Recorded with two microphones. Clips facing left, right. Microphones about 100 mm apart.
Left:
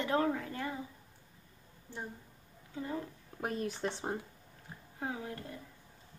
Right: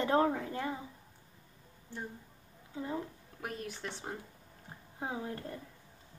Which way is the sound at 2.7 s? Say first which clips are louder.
Right 1 dB; 20° right (ahead or behind).